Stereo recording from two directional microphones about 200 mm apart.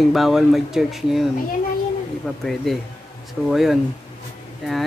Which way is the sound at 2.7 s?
Centre (ahead or behind).